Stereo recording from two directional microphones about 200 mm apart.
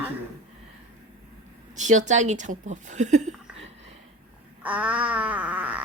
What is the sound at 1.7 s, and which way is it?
Speech, 35° right (ahead or behind).